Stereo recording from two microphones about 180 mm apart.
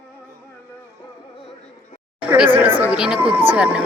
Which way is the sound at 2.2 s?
5° right (ahead or behind).